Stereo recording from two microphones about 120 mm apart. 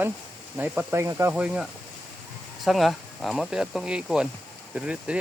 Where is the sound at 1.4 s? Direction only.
10° right (ahead or behind).